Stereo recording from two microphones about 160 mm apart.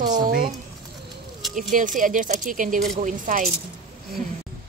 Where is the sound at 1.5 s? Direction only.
55° right (ahead or behind).